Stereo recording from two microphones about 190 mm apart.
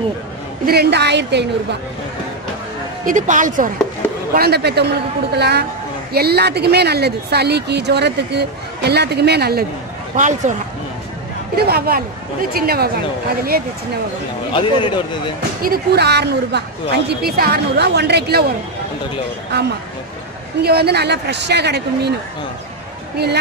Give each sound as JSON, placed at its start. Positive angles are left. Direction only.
{"t": 0.7, "sound": "speech", "side_deg": -60}
{"t": 3.1, "sound": "speech", "side_deg": -40}
{"t": 4.3, "sound": "speech", "side_deg": -55}
{"t": 10.1, "sound": "speech", "side_deg": -40}
{"t": 11.5, "sound": "speech", "side_deg": -55}
{"t": 14.5, "sound": "a man's voice", "side_deg": 25}
{"t": 15.6, "sound": "speech", "side_deg": -55}
{"t": 19.5, "sound": "speech", "side_deg": -65}